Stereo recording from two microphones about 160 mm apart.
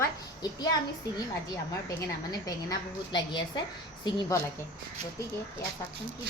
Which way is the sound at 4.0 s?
25° left (ahead or behind).